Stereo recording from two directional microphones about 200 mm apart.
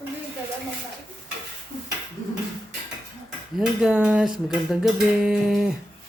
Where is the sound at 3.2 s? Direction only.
5° right (ahead or behind).